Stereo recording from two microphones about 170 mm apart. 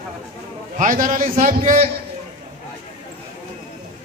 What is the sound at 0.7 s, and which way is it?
Speech, 50° right (ahead or behind).